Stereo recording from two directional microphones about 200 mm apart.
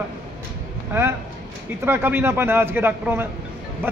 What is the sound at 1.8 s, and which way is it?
Speech, 10° right (ahead or behind).